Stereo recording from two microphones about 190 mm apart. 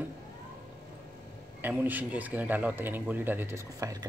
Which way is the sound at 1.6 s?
10° right (ahead or behind).